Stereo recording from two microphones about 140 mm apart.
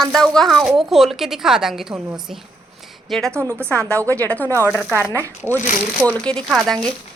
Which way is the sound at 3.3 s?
15° right (ahead or behind).